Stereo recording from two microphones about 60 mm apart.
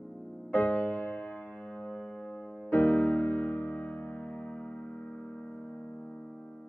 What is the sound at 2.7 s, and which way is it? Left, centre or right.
Music, left.